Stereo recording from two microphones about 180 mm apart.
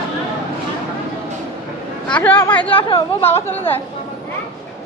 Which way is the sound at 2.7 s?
30° left (ahead or behind).